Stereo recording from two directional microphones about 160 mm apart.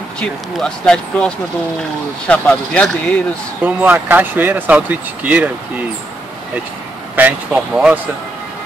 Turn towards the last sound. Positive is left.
turn(degrees=-5)  # may be behind; listen again after turning